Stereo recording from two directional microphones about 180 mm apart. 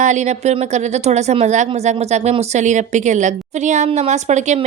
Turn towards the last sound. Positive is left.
turn(degrees=-40)  # may be behind; listen again after turning